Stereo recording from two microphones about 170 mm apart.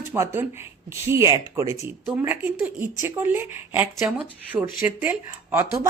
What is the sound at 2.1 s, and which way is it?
Speech, 10° right (ahead or behind).